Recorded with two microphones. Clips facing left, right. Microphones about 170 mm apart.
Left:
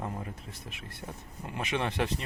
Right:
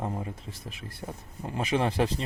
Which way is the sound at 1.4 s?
35° right (ahead or behind).